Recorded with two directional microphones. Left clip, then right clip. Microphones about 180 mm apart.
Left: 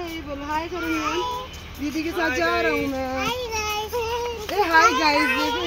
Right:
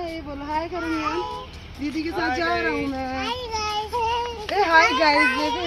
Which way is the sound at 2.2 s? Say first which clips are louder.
Left 2 dB; 15° right (ahead or behind).